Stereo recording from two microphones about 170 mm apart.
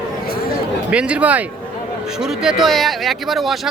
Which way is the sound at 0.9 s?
5° right (ahead or behind).